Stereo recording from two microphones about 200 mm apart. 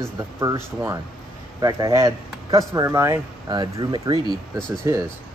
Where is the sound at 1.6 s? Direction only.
15° right (ahead or behind).